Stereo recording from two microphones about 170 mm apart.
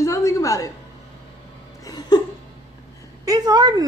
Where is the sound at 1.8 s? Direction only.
25° left (ahead or behind).